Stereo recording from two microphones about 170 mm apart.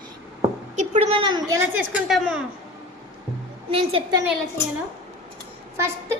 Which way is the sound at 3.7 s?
30° right (ahead or behind).